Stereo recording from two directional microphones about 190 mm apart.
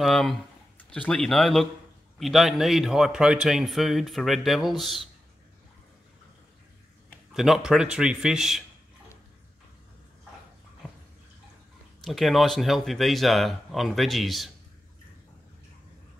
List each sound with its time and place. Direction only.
0.0 s a man's voice: centre (ahead or behind)
7.3 s a man's voice: centre (ahead or behind)
12.0 s a man's voice: centre (ahead or behind)